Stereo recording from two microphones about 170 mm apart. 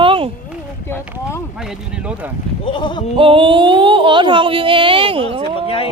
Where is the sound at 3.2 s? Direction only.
30° right (ahead or behind).